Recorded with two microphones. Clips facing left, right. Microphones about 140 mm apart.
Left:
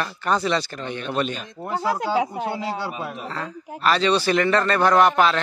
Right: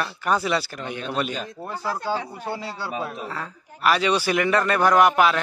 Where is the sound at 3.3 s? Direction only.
10° right (ahead or behind).